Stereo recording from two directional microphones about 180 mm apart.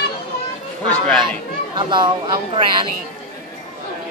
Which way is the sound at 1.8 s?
25° right (ahead or behind).